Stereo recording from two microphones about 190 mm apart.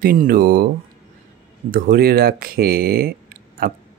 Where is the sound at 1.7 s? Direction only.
50° right (ahead or behind).